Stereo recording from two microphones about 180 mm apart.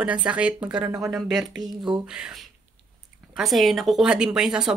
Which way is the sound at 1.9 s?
5° right (ahead or behind).